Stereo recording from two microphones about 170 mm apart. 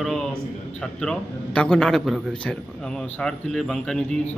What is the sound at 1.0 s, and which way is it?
A man's voice, 5° left (ahead or behind).